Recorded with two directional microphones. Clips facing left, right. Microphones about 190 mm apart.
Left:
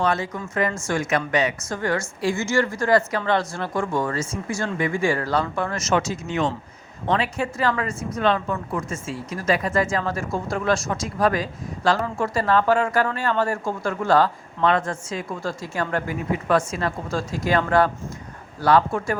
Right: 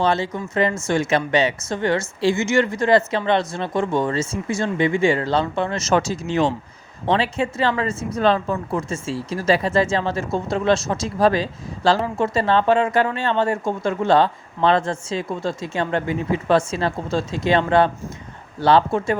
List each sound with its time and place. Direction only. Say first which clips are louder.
0.0 s speech: right 3 dB; 25° right (ahead or behind)